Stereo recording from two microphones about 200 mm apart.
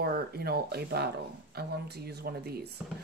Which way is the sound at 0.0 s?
50° right (ahead or behind).